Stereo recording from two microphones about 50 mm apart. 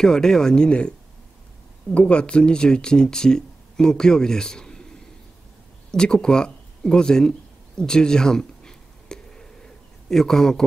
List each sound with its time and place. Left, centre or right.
0.0 s speech: centre
2.0 s speech: left
5.9 s a sound: centre